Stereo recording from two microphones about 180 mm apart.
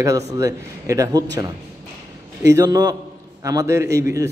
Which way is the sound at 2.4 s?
20° right (ahead or behind).